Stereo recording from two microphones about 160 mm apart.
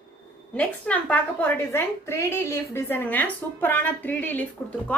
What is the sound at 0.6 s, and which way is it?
A woman's voice, 10° left (ahead or behind).